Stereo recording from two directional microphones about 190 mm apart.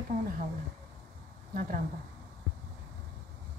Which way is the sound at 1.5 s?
45° right (ahead or behind).